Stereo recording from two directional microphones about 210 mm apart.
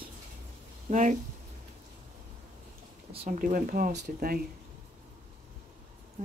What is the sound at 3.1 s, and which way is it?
Speech, 30° right (ahead or behind).